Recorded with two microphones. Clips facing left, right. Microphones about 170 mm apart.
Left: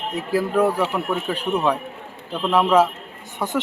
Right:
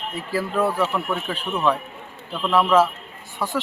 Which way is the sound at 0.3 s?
15° left (ahead or behind).